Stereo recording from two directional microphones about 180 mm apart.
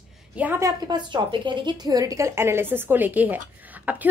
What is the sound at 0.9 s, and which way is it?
A woman's voice, 25° right (ahead or behind).